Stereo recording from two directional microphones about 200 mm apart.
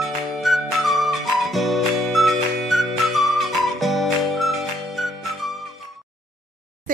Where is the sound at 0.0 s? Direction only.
Centre (ahead or behind).